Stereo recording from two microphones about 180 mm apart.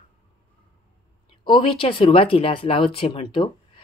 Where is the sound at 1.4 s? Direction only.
30° left (ahead or behind).